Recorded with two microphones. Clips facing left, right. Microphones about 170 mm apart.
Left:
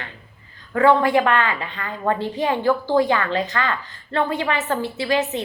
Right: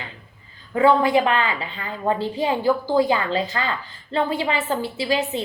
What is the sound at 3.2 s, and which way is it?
A woman's voice, 30° right (ahead or behind).